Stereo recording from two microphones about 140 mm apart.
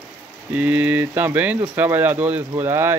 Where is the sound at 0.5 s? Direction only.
10° right (ahead or behind).